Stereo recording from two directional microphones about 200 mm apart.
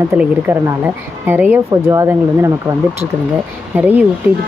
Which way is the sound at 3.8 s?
5° right (ahead or behind).